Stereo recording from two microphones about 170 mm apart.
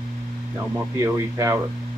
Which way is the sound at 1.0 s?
20° right (ahead or behind).